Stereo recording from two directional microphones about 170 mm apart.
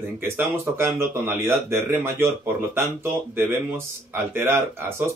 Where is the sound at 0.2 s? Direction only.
15° right (ahead or behind).